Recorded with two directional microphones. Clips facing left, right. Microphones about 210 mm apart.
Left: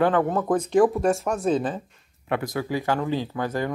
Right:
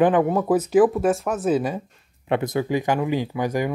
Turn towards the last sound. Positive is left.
turn(degrees=-15)  # may be behind; listen again after turning